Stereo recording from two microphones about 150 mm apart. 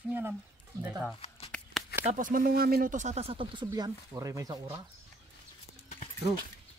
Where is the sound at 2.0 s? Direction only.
55° right (ahead or behind); by 3.7 s 35° right (ahead or behind).